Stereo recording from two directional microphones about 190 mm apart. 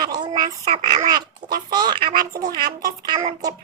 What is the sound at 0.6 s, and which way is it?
Speech, 40° right (ahead or behind).